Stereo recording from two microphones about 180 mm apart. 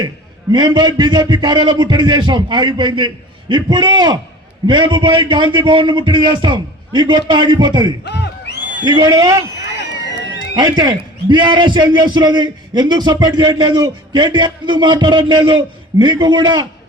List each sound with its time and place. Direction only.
0.5 s a man's voice: 25° right (ahead or behind)
8.0 s a sound: 70° left (ahead or behind)
8.8 s a man's voice: 25° right (ahead or behind)
10.5 s a man's voice: 25° right (ahead or behind)